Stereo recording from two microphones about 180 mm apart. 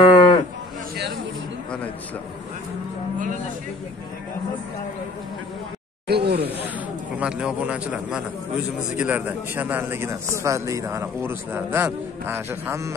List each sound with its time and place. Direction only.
0.0 s cattle: 25° left (ahead or behind)
6.0 s speech: 65° right (ahead or behind)
7.2 s a man's voice: 5° right (ahead or behind)